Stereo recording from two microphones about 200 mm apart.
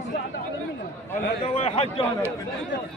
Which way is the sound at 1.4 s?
30° left (ahead or behind).